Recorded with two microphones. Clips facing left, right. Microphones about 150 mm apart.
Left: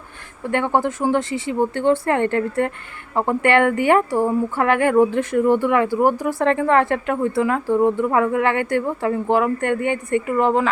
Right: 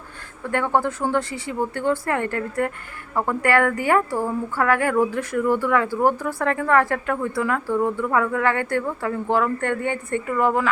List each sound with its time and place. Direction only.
0.5 s a woman's voice: 20° left (ahead or behind)